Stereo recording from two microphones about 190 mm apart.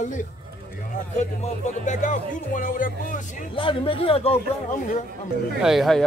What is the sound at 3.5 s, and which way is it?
Speech, 25° left (ahead or behind).